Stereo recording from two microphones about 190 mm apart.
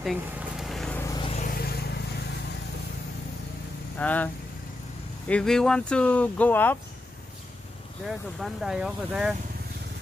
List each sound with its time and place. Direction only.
0.0 s a sound: centre (ahead or behind)
1.0 s vehicle: 20° left (ahead or behind)
1.5 s vehicle: 55° left (ahead or behind)
4.0 s speech: 10° left (ahead or behind)
5.3 s speech: 5° left (ahead or behind)
8.1 s speech: centre (ahead or behind)